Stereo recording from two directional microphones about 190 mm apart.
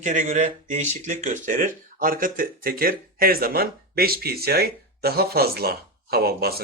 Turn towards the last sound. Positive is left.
turn(degrees=-55)  # may be behind; listen again after turning